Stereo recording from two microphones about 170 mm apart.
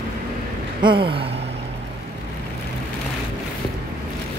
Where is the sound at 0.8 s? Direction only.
30° right (ahead or behind).